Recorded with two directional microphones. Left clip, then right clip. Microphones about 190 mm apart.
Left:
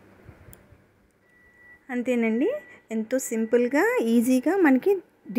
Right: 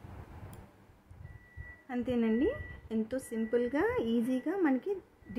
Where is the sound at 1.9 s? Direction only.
30° left (ahead or behind).